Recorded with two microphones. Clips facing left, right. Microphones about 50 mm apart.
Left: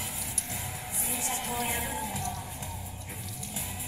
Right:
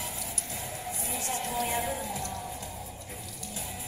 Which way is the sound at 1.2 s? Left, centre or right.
Left.